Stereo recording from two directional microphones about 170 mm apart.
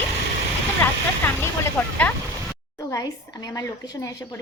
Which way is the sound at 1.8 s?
10° left (ahead or behind).